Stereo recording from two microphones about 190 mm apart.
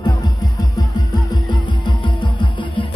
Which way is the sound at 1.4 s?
25° left (ahead or behind).